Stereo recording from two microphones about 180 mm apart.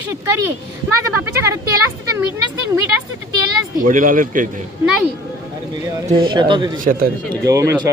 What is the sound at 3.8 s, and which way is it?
Speech, 50° right (ahead or behind).